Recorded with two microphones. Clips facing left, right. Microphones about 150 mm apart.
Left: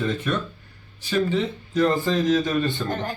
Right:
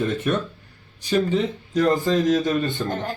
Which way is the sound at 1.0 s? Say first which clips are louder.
Right 2 dB; 40° right (ahead or behind).